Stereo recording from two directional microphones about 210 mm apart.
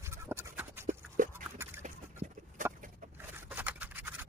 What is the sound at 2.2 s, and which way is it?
Clip-clop, 40° right (ahead or behind).